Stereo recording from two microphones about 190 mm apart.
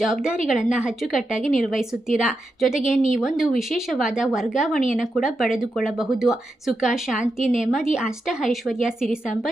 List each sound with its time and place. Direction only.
0.0 s speech: 5° right (ahead or behind)
1.3 s a woman's voice: 40° left (ahead or behind)
1.6 s speech: centre (ahead or behind)
2.8 s a woman's voice: 40° left (ahead or behind)
3.1 s speech: 5° right (ahead or behind)